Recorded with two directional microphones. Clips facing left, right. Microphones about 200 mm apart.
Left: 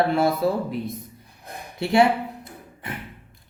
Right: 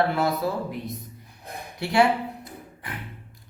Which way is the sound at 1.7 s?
25° left (ahead or behind).